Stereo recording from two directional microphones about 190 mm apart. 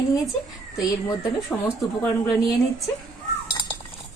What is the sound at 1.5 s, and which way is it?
Speech, 10° left (ahead or behind).